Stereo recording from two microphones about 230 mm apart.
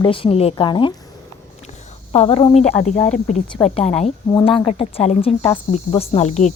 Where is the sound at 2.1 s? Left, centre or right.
Left.